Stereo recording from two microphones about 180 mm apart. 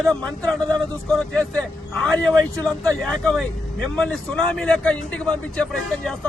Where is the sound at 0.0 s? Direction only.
5° left (ahead or behind).